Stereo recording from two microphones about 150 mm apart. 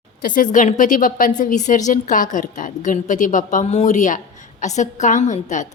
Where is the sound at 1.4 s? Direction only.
55° left (ahead or behind).